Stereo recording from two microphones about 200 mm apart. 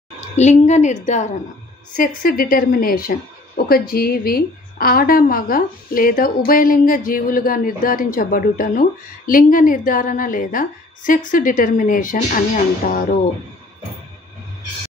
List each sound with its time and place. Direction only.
0.4 s a woman's voice: 35° left (ahead or behind)